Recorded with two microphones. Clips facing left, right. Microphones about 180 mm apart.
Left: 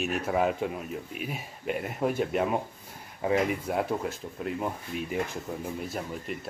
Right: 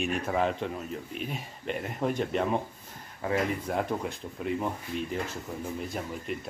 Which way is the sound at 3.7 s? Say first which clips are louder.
Left 1 dB; 5° left (ahead or behind).